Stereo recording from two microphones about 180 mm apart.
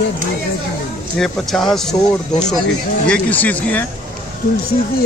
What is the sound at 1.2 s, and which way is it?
Speech, centre (ahead or behind).